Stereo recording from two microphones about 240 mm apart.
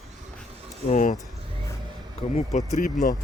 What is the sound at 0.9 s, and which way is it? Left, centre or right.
Speech, left.